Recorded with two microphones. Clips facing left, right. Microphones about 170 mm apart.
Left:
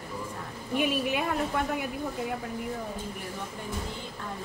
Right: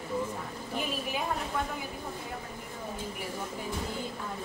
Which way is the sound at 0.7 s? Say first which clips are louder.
Left 7 dB; 70° left (ahead or behind).